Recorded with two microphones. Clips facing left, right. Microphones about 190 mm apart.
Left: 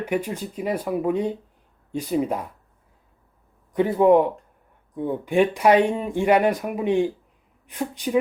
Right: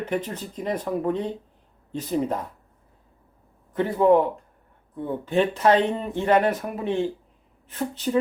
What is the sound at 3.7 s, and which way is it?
Speech, 15° left (ahead or behind).